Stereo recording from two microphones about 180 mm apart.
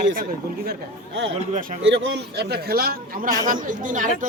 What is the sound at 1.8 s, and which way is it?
A man's voice, 75° right (ahead or behind).